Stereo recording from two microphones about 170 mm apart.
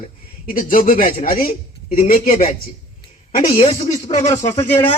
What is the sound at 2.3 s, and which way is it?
A man's voice, 35° left (ahead or behind).